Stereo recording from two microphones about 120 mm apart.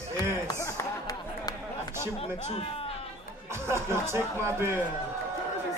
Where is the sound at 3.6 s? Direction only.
20° right (ahead or behind).